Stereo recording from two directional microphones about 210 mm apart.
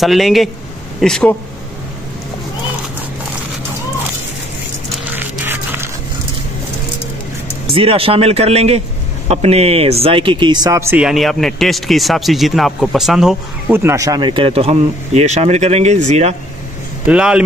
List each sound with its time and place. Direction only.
0.0 s speech: centre (ahead or behind)
4.9 s dog: 10° right (ahead or behind)
7.7 s speech: 25° right (ahead or behind)
17.0 s speech: 5° right (ahead or behind)